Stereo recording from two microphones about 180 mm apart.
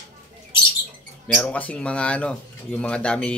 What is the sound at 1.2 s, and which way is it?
Speech, 5° left (ahead or behind).